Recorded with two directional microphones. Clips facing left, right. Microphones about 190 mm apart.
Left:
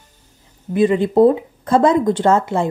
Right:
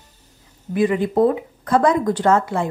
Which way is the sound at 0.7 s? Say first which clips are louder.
Left 4 dB; 25° left (ahead or behind).